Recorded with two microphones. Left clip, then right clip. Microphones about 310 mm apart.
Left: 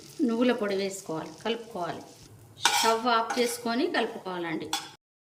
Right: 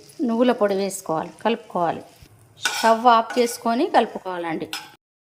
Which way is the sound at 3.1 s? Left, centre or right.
Centre.